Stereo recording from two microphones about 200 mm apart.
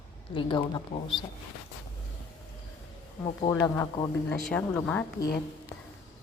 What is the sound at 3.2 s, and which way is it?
Speech, 20° left (ahead or behind).